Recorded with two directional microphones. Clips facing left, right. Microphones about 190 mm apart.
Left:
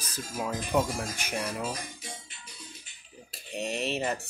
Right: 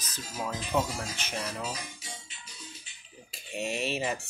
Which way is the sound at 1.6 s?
50° left (ahead or behind).